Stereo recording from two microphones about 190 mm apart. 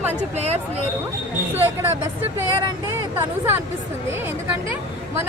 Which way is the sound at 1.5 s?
10° right (ahead or behind).